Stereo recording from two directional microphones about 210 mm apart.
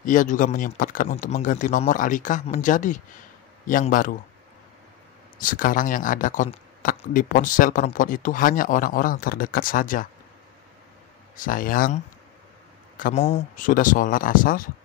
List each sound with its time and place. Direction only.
0.0 s speech: 40° left (ahead or behind)
5.4 s speech: 40° left (ahead or behind)
11.3 s speech: 40° left (ahead or behind)